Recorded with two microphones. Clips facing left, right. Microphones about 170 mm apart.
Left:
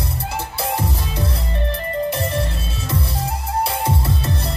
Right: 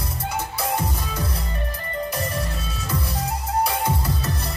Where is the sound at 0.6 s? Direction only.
30° left (ahead or behind).